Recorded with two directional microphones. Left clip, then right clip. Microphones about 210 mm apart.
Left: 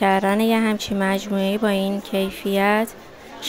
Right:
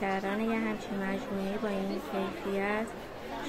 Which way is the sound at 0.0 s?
55° left (ahead or behind).